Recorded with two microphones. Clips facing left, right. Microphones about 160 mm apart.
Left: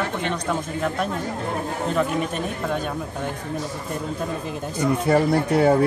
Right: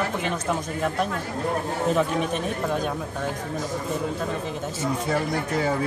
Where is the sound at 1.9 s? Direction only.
Centre (ahead or behind).